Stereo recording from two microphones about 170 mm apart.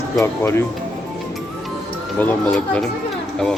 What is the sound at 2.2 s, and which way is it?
Speech, 5° left (ahead or behind).